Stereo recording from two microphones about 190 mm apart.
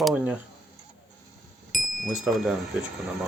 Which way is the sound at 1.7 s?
Centre (ahead or behind).